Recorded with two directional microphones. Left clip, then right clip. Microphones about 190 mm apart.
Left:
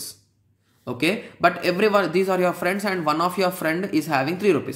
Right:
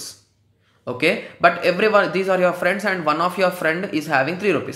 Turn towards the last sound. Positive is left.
turn(degrees=20)  # may be behind; listen again after turning